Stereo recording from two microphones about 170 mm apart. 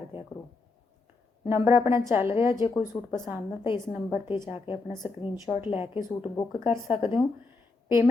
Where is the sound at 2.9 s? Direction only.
15° left (ahead or behind).